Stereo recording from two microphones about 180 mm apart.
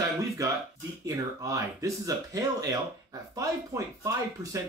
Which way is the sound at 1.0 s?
20° right (ahead or behind).